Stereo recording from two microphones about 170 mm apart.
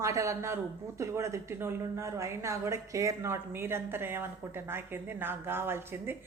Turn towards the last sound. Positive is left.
turn(degrees=-15)  # may be behind; listen again after turning